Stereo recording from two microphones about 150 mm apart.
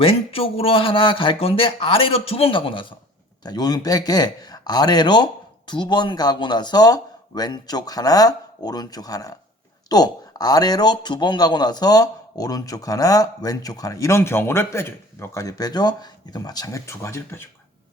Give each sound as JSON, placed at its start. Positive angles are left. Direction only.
{"t": 0.0, "sound": "a man's voice", "side_deg": 40}